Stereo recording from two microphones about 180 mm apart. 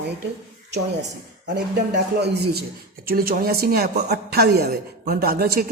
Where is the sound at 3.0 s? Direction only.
55° right (ahead or behind).